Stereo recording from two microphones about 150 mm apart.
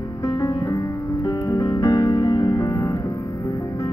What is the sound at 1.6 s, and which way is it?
Music, 25° left (ahead or behind).